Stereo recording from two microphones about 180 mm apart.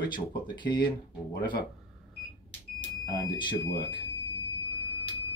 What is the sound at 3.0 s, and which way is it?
Speech, 25° left (ahead or behind).